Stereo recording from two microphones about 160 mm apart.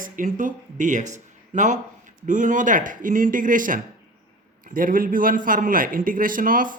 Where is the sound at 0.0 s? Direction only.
55° right (ahead or behind).